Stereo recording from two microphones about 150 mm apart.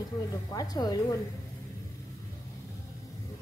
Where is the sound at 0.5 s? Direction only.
25° left (ahead or behind).